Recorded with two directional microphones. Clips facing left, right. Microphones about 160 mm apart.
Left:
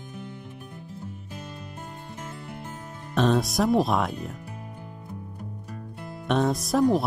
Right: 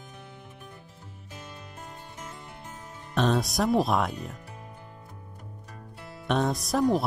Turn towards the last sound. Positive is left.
turn(degrees=0)  # may be behind; listen again after turning